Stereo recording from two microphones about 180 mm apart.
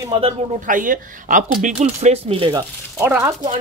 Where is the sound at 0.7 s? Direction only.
50° right (ahead or behind); by 2.6 s 30° right (ahead or behind).